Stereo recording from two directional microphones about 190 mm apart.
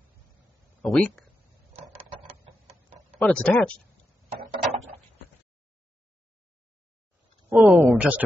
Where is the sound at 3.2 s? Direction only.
5° left (ahead or behind).